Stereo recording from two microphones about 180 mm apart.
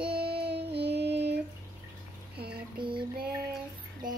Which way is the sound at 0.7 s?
70° right (ahead or behind).